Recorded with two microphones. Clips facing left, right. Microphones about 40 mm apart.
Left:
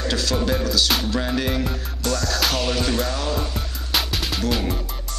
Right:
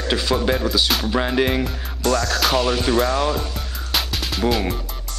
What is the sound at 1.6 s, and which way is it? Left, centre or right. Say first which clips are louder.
Music: right 2 dB; centre.